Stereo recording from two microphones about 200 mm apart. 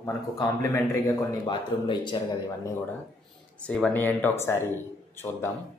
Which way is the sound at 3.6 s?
5° left (ahead or behind).